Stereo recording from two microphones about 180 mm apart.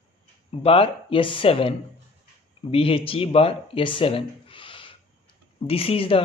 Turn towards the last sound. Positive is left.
turn(degrees=30)  # may be behind; listen again after turning